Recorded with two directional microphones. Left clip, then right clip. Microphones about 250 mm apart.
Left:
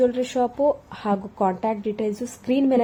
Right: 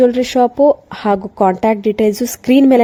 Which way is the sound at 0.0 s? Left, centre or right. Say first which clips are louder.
Right 9 dB; right.